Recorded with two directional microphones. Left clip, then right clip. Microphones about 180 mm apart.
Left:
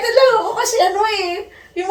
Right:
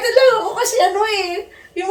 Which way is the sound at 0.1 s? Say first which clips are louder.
Even; 15° right (ahead or behind).